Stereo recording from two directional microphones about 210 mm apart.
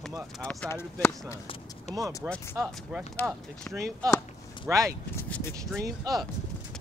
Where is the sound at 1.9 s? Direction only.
30° left (ahead or behind).